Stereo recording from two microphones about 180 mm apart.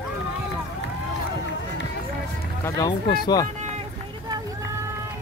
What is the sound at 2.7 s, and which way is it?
Speech, 20° left (ahead or behind).